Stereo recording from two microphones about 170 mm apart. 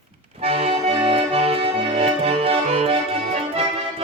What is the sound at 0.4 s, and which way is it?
Music, 35° right (ahead or behind).